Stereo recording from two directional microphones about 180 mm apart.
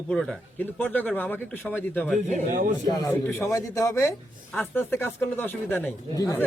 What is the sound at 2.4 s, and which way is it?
Speech, 45° right (ahead or behind).